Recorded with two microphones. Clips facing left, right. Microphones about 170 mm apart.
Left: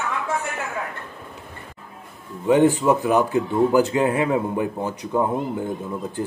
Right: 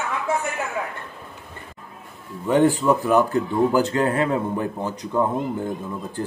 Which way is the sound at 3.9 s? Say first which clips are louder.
Left 1 dB; 15° left (ahead or behind).